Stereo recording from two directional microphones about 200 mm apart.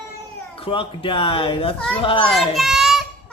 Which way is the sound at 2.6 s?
Centre (ahead or behind).